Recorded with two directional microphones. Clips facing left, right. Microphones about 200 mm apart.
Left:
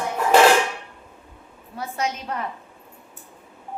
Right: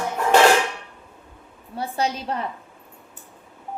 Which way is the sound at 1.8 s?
35° right (ahead or behind).